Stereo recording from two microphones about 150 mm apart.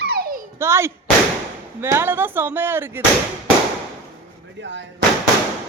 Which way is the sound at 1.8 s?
15° right (ahead or behind).